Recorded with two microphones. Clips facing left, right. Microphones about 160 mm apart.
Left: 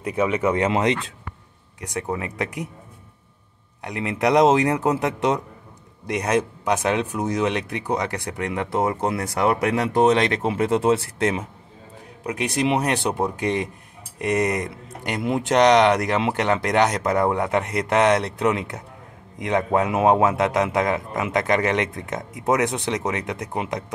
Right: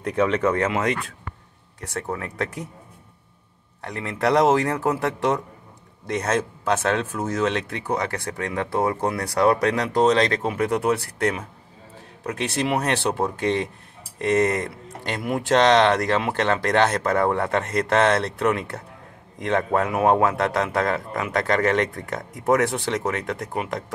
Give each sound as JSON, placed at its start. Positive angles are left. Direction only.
{"t": 0.0, "sound": "speech", "side_deg": 10}
{"t": 0.7, "sound": "speech", "side_deg": 25}
{"t": 3.8, "sound": "speech", "side_deg": 15}